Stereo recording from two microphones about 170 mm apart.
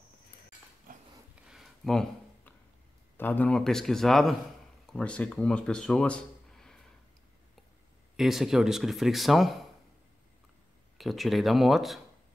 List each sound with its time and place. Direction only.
1.3 s a sound: centre (ahead or behind)
3.2 s speech: 10° left (ahead or behind)
8.2 s speech: centre (ahead or behind)
11.0 s speech: centre (ahead or behind)